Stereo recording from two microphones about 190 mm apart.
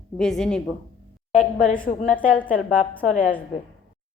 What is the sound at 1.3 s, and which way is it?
Speech, 40° left (ahead or behind).